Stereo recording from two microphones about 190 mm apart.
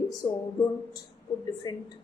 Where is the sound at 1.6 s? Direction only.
20° left (ahead or behind).